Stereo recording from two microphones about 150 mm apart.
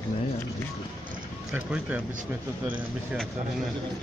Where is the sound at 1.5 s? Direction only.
10° right (ahead or behind).